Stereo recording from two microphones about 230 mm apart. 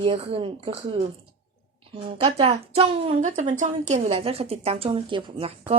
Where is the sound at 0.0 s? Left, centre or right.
Right.